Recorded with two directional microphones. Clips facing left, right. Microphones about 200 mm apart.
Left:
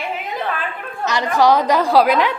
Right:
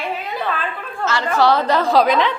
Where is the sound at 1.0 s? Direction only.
15° left (ahead or behind).